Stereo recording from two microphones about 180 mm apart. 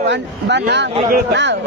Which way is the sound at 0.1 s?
75° right (ahead or behind).